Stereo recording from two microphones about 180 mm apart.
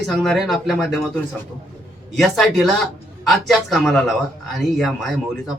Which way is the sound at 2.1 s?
Centre (ahead or behind).